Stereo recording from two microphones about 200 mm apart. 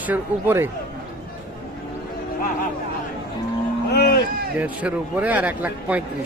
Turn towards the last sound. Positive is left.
turn(degrees=-10)  # may be behind; listen again after turning